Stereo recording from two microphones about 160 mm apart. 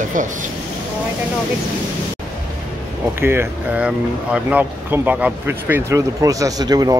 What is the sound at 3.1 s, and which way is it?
Speech, 15° right (ahead or behind).